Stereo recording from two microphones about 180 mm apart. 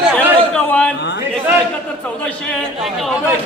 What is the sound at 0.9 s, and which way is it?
Speech, 75° left (ahead or behind).